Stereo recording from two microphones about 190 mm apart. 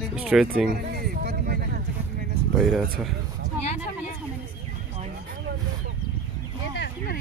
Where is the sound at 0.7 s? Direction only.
55° right (ahead or behind).